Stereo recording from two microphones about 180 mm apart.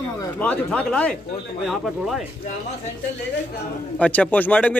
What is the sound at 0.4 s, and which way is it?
A man's voice, 5° left (ahead or behind).